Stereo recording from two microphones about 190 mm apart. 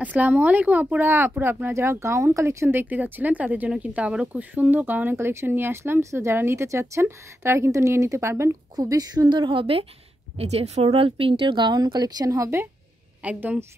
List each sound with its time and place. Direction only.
0.0 s speech: 10° right (ahead or behind)